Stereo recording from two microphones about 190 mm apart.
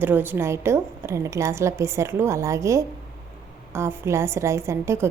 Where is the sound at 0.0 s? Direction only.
10° right (ahead or behind).